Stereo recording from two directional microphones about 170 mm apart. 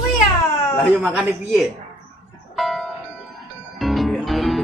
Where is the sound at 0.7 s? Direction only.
5° right (ahead or behind).